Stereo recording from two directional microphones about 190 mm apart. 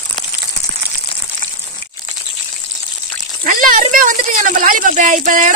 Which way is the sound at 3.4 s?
45° right (ahead or behind).